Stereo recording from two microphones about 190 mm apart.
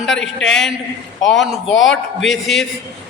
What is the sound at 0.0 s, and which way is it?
A man's voice, centre (ahead or behind).